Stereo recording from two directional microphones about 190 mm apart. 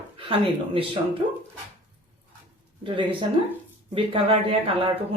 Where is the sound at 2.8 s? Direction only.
25° right (ahead or behind).